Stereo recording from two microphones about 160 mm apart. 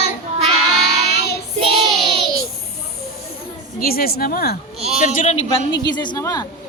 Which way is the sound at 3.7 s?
70° left (ahead or behind).